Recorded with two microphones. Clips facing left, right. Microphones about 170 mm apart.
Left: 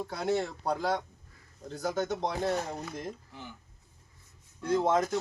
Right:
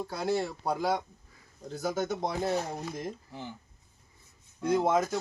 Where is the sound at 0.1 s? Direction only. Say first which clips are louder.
Even; centre (ahead or behind).